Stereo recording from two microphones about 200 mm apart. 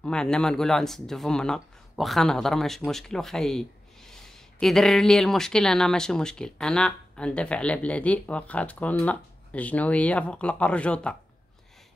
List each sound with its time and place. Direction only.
0.0 s speech: 5° left (ahead or behind)